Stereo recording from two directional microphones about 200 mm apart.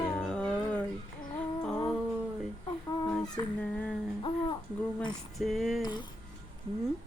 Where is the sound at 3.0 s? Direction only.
5° left (ahead or behind).